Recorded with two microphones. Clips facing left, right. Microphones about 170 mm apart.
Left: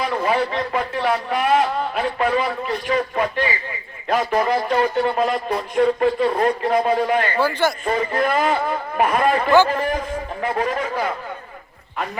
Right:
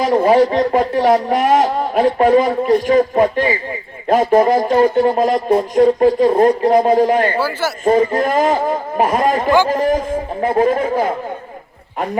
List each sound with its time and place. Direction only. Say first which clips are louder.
0.0 s speech: right 9 dB; 40° right (ahead or behind)
7.3 s a man's voice: even; 5° right (ahead or behind)
7.9 s speech: right 7 dB; 45° right (ahead or behind)